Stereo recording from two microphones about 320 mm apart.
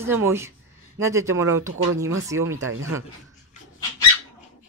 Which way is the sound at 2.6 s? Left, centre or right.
Right.